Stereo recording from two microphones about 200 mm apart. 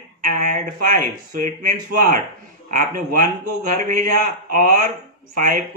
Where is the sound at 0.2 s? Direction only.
40° right (ahead or behind).